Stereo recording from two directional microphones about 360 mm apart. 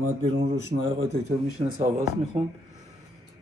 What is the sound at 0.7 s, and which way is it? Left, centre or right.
A man's voice, right.